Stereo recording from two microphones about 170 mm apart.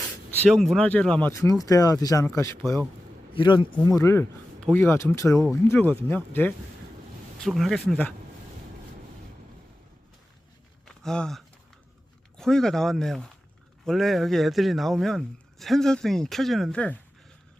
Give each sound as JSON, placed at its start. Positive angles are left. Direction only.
{"t": 0.3, "sound": "speech", "side_deg": 0}
{"t": 1.3, "sound": "speech", "side_deg": 20}
{"t": 3.3, "sound": "speech", "side_deg": 30}
{"t": 7.3, "sound": "a man's voice", "side_deg": 0}
{"t": 10.8, "sound": "a sound", "side_deg": 5}
{"t": 12.4, "sound": "a man's voice", "side_deg": 5}